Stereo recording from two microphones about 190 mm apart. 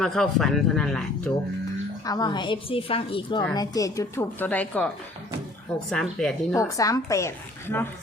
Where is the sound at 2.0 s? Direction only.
20° left (ahead or behind).